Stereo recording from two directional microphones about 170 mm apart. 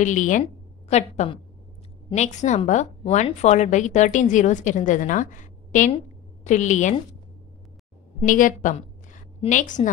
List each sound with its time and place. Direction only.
0.0 s a woman's voice: 50° left (ahead or behind)
8.3 s a woman's voice: 50° left (ahead or behind)